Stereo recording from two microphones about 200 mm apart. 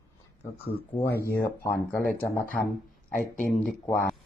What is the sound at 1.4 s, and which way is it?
Speech, 50° left (ahead or behind).